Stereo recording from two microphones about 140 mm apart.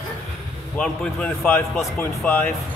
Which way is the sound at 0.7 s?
5° left (ahead or behind).